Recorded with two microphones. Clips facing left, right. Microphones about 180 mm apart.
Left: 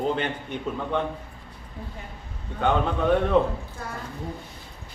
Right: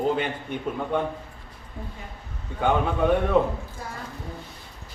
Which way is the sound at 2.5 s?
10° right (ahead or behind).